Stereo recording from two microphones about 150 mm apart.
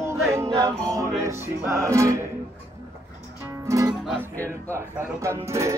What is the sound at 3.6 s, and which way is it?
Music, 20° right (ahead or behind).